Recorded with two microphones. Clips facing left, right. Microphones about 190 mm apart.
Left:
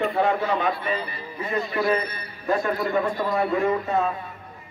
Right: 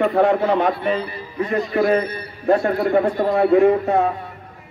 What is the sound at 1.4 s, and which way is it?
A man's voice, 50° right (ahead or behind).